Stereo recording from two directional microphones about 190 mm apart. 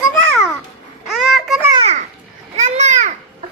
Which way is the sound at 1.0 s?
Centre (ahead or behind).